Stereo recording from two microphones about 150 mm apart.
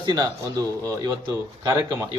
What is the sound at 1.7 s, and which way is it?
Speech, 20° right (ahead or behind).